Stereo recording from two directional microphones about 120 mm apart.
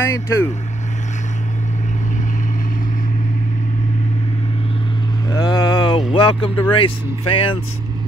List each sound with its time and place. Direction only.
0.0 s speech: 20° left (ahead or behind)
5.3 s vehicle: 35° left (ahead or behind)
6.1 s speech: 45° left (ahead or behind)